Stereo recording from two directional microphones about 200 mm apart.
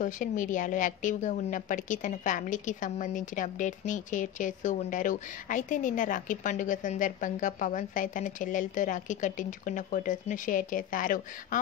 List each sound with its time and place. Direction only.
0.0 s a woman's voice: 40° left (ahead or behind)